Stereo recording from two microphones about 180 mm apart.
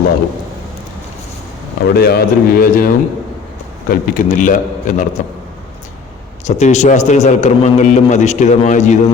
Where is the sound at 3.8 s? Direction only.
45° left (ahead or behind).